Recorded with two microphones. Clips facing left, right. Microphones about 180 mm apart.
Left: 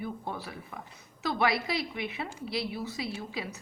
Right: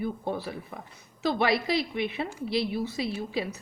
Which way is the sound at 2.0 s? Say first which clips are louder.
Right 5 dB; 30° right (ahead or behind).